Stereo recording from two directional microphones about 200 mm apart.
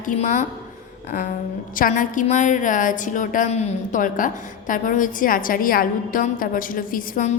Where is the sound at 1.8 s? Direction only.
40° left (ahead or behind).